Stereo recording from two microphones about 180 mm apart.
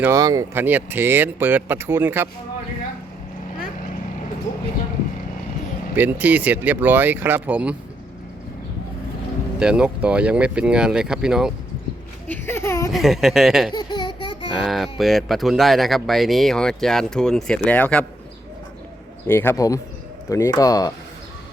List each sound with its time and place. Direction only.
0.0 s speech: 20° right (ahead or behind)
6.0 s speech: 10° right (ahead or behind)
9.6 s speech: 5° right (ahead or behind)
12.3 s speech: 15° left (ahead or behind)
12.9 s speech: centre (ahead or behind)
13.7 s a sound: 25° left (ahead or behind)
14.6 s speech: centre (ahead or behind)
19.3 s speech: 10° left (ahead or behind)